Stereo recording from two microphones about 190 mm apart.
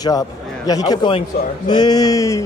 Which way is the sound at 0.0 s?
20° left (ahead or behind).